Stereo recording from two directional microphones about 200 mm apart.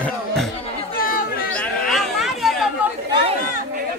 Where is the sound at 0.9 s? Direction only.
45° left (ahead or behind).